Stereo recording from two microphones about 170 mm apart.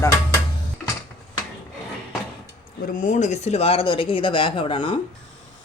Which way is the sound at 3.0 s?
45° left (ahead or behind).